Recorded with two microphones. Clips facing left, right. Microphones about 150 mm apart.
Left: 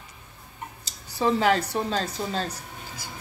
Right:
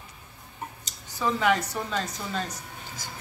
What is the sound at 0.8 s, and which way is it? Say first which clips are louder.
Speech: left 5 dB; 30° left (ahead or behind).